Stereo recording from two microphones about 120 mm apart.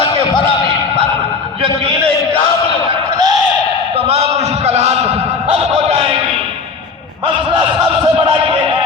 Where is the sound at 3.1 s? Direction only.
35° right (ahead or behind).